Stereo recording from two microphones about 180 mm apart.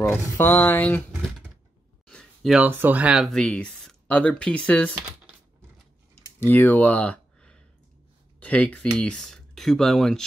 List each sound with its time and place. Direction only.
0.0 s speech: 10° left (ahead or behind)
2.0 s speech: centre (ahead or behind)
6.4 s speech: 10° left (ahead or behind)